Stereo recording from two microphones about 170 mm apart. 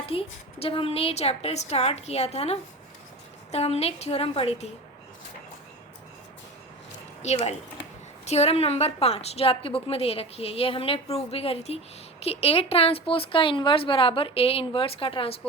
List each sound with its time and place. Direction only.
0.1 s a woman's voice: 35° left (ahead or behind)
7.2 s a woman's voice: 40° left (ahead or behind)